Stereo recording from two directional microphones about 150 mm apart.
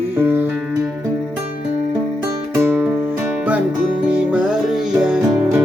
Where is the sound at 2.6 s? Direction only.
10° right (ahead or behind).